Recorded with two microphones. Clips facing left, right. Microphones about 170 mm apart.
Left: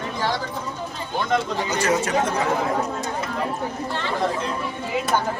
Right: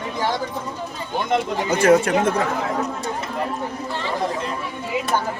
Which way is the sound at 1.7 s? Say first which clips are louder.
Right 7 dB; 55° right (ahead or behind).